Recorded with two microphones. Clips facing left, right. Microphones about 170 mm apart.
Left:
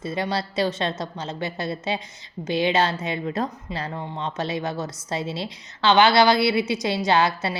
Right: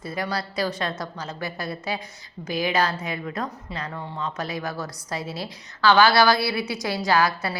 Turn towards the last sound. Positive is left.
turn(degrees=25)  # may be behind; listen again after turning